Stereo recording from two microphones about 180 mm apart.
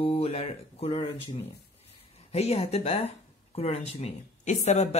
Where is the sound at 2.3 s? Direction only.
35° left (ahead or behind).